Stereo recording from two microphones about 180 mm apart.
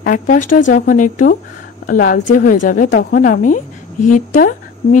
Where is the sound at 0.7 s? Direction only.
45° left (ahead or behind).